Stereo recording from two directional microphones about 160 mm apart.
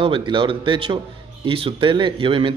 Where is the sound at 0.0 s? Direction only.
30° right (ahead or behind).